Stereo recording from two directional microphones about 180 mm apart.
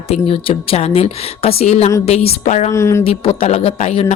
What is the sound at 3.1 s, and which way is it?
A woman's voice, 30° left (ahead or behind).